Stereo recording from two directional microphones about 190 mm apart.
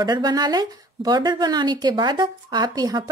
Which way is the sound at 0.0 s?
20° right (ahead or behind).